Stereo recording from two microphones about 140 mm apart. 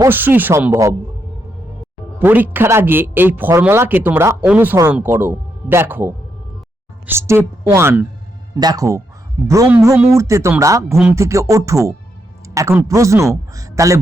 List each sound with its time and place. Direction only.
0.0 s speech: 15° right (ahead or behind)
2.1 s speech: 15° right (ahead or behind)
7.2 s a man's voice: 20° right (ahead or behind)